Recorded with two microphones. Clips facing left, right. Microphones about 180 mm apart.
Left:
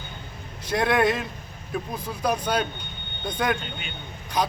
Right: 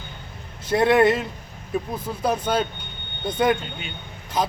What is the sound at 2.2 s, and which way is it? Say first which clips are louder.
Speech: right 2 dB; 25° right (ahead or behind).